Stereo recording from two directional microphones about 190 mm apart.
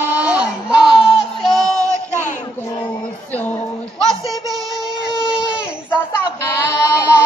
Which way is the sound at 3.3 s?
10° left (ahead or behind).